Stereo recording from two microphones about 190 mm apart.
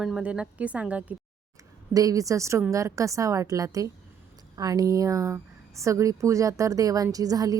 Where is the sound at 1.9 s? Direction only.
20° right (ahead or behind).